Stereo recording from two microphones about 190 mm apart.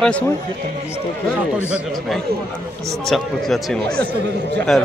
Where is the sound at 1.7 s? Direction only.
5° right (ahead or behind).